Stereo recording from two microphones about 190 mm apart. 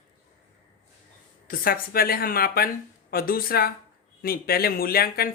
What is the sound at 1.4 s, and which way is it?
Speech, 50° left (ahead or behind).